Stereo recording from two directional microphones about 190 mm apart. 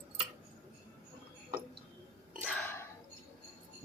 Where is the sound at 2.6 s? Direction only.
15° left (ahead or behind).